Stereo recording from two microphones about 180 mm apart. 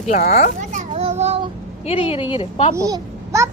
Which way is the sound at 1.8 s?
35° left (ahead or behind).